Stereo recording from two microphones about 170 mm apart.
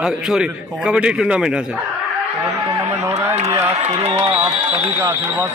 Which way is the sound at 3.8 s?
40° right (ahead or behind).